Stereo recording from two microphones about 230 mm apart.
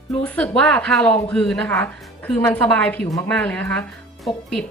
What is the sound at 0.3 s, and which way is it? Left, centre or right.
A woman's voice, centre.